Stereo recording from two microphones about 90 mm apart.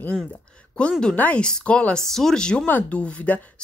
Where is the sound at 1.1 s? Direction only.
15° left (ahead or behind).